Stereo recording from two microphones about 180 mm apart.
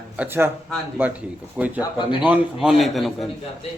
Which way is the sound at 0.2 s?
10° right (ahead or behind).